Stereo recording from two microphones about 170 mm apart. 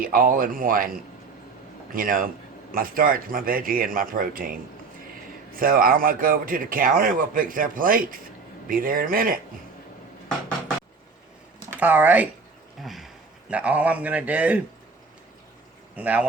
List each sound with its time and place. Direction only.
0.0 s a man's voice: 55° right (ahead or behind)
2.0 s a man's voice: 55° right (ahead or behind)
11.7 s a man's voice: 10° right (ahead or behind)
16.0 s a man's voice: 10° right (ahead or behind)